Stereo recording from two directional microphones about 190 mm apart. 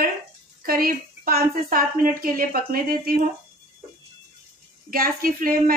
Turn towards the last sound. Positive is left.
turn(degrees=-50)  # may be behind; listen again after turning